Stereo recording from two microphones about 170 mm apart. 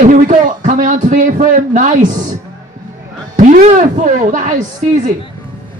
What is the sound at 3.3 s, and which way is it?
Speech, 45° right (ahead or behind).